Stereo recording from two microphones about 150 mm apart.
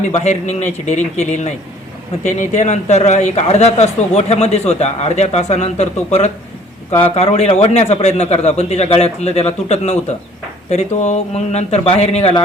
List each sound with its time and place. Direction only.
0.1 s speech: 50° left (ahead or behind)